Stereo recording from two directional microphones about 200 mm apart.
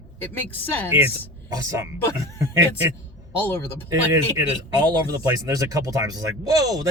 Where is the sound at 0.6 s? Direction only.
10° left (ahead or behind).